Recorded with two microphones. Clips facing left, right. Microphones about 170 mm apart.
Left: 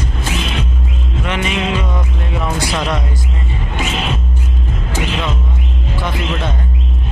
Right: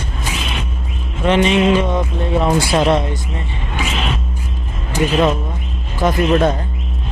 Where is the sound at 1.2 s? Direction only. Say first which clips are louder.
Right 8 dB; 30° right (ahead or behind).